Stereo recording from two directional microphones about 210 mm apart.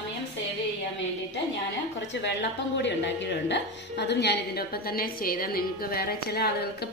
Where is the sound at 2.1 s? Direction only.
60° left (ahead or behind).